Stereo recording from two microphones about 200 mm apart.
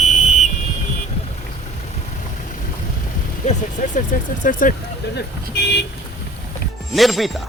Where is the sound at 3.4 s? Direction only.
35° left (ahead or behind).